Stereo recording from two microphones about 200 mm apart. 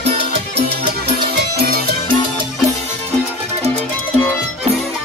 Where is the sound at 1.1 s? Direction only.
50° right (ahead or behind).